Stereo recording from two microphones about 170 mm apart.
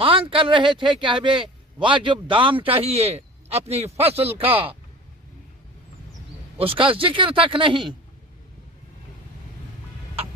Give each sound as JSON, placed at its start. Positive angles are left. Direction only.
{"t": 0.0, "sound": "speech", "side_deg": -30}
{"t": 6.6, "sound": "speech", "side_deg": -30}